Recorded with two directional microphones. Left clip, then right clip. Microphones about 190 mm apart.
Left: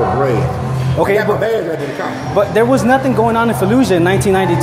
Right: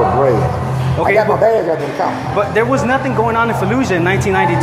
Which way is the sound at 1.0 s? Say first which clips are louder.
Right 1 dB; 40° left (ahead or behind).